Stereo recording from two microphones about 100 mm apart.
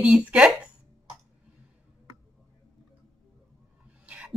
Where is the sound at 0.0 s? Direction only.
10° right (ahead or behind).